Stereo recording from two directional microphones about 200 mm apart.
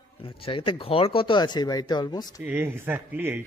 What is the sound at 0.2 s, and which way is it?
Speech, 25° left (ahead or behind).